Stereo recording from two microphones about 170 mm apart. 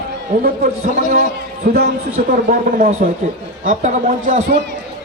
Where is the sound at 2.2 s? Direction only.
55° right (ahead or behind).